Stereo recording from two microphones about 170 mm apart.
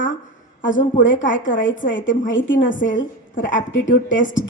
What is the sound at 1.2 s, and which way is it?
A woman's voice, 50° left (ahead or behind).